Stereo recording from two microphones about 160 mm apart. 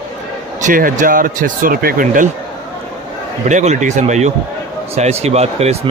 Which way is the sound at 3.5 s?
45° right (ahead or behind).